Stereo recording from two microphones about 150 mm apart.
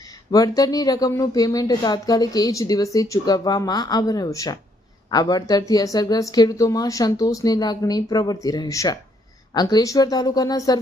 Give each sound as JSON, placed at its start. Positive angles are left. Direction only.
{"t": 0.3, "sound": "speech", "side_deg": 25}